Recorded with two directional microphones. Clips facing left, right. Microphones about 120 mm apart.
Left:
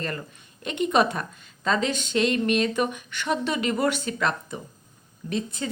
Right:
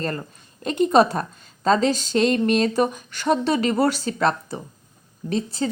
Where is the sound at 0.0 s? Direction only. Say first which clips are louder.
Right 4 dB; 35° right (ahead or behind).